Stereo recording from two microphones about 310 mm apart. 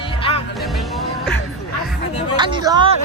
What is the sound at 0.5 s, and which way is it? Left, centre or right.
Music, centre.